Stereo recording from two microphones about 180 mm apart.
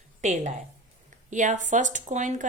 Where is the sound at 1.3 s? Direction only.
45° right (ahead or behind).